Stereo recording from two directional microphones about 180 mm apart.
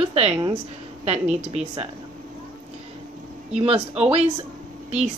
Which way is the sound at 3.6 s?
35° right (ahead or behind).